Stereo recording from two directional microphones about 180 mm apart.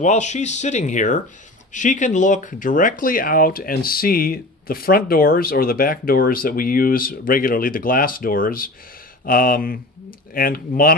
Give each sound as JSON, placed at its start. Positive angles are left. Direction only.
{"t": 0.0, "sound": "speech", "side_deg": 40}